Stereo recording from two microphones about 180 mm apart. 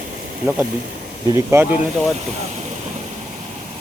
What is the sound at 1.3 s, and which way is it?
Speech, 15° right (ahead or behind).